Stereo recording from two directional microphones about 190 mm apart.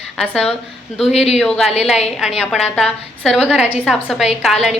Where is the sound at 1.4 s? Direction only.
Centre (ahead or behind).